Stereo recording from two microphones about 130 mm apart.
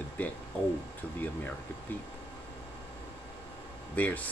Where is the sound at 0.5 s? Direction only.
10° left (ahead or behind).